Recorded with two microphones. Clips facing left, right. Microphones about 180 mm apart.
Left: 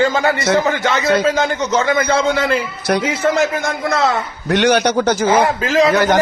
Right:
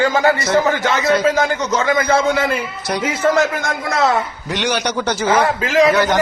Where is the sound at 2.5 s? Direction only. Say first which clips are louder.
Left 4 dB; 90° left.